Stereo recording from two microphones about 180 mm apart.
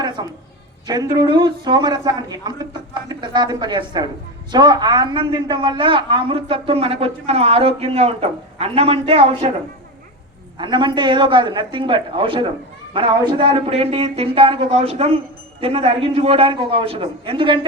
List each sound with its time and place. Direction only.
0.0 s a sound: 25° right (ahead or behind)
0.9 s a woman's voice: 25° right (ahead or behind)
10.6 s a woman's voice: 25° right (ahead or behind)